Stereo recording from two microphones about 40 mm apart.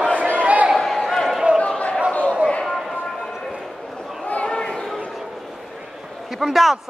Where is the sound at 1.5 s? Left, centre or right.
Centre.